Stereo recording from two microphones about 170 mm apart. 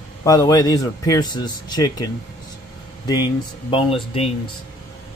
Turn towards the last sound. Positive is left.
turn(degrees=30)  # may be behind; listen again after turning